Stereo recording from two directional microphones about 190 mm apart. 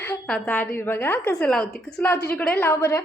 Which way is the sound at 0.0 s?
10° left (ahead or behind).